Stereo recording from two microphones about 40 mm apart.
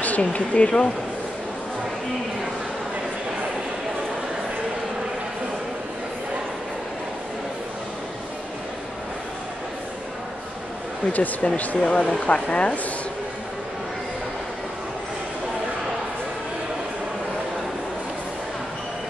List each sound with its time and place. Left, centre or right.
0.0 s speech: left
11.1 s speech: left
11.8 s speech: left